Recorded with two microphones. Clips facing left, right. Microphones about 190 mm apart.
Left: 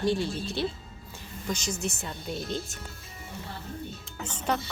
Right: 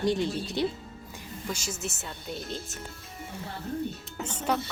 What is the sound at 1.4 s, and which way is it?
Speech, 5° right (ahead or behind).